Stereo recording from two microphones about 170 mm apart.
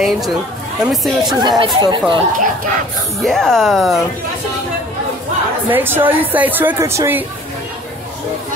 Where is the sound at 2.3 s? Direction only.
50° right (ahead or behind).